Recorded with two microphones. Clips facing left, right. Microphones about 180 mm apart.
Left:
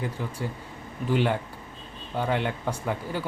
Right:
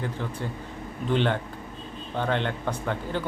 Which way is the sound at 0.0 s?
10° left (ahead or behind).